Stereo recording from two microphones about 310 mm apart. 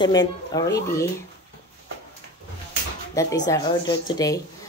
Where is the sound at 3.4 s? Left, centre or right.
Centre.